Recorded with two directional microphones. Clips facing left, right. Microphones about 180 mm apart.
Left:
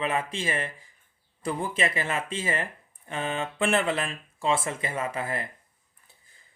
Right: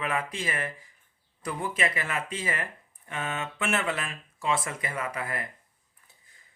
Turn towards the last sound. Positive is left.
turn(degrees=25)  # may be behind; listen again after turning